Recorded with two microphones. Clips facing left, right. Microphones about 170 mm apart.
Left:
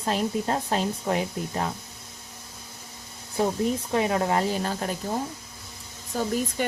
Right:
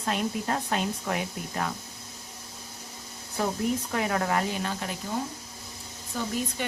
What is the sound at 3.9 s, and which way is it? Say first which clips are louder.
Speech: left 6 dB; 25° left (ahead or behind).